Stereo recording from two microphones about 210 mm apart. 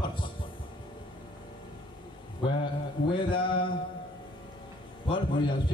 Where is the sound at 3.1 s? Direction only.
25° left (ahead or behind).